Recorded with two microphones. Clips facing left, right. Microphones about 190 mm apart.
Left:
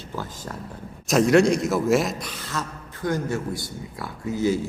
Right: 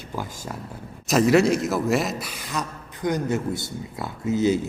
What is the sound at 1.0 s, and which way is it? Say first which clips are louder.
A man's voice: left 1 dB; centre (ahead or behind).